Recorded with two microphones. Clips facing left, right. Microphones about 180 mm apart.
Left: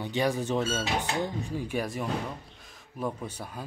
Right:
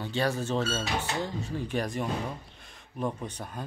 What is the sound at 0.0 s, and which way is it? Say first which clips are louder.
Speech: left 1 dB; 15° left (ahead or behind).